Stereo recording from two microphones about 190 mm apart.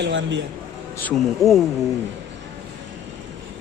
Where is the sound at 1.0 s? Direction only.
5° left (ahead or behind).